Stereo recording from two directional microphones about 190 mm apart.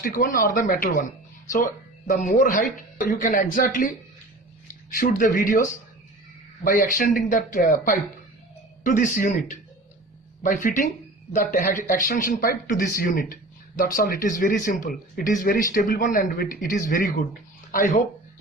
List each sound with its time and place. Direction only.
0.0 s speech: 50° left (ahead or behind)
4.9 s speech: 45° left (ahead or behind)
6.7 s speech: 45° left (ahead or behind)